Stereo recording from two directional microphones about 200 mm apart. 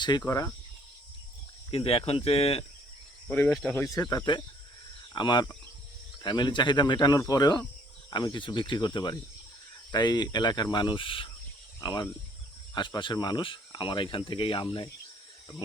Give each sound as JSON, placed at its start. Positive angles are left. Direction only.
{"t": 0.0, "sound": "speech", "side_deg": 20}
{"t": 1.7, "sound": "speech", "side_deg": 30}
{"t": 3.2, "sound": "speech", "side_deg": 10}